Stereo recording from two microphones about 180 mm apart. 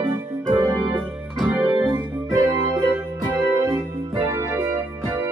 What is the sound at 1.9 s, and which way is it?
Organ, 20° right (ahead or behind).